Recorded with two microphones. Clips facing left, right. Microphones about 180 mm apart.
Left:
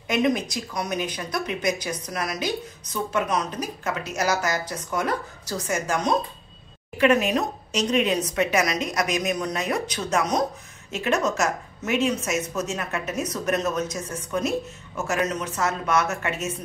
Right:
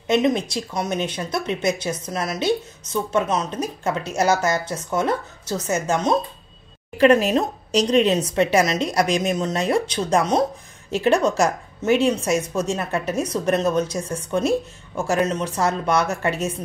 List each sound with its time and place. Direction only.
0.1 s speech: 25° right (ahead or behind)